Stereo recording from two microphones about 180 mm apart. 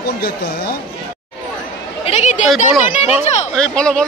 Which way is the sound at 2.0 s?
40° left (ahead or behind).